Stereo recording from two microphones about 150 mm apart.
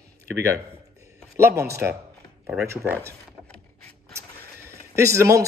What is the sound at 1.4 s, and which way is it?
Speech, 20° right (ahead or behind).